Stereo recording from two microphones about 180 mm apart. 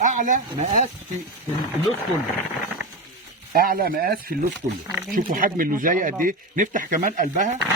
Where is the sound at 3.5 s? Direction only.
50° right (ahead or behind).